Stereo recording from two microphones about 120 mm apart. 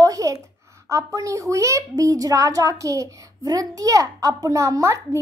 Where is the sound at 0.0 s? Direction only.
30° right (ahead or behind).